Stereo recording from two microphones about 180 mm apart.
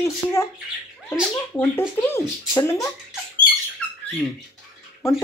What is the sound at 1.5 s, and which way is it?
Speech, 15° left (ahead or behind).